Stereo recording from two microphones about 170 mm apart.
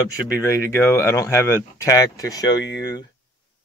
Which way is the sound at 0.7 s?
15° left (ahead or behind).